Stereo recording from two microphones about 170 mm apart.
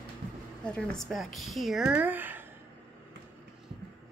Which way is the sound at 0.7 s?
5° left (ahead or behind).